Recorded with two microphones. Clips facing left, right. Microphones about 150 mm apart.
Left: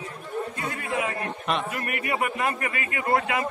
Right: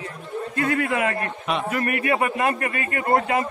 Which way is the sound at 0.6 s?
65° right (ahead or behind).